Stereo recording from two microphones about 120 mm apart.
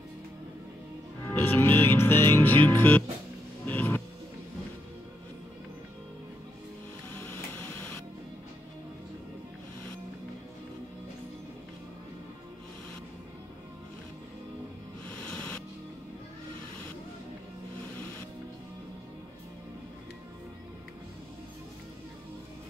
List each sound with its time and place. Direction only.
1.4 s music: 20° left (ahead or behind)
15.2 s music: 15° left (ahead or behind)